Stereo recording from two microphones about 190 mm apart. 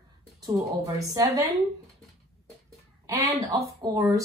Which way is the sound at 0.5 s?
20° right (ahead or behind).